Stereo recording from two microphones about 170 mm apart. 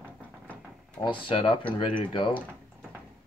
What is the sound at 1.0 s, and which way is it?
Speech, 30° left (ahead or behind).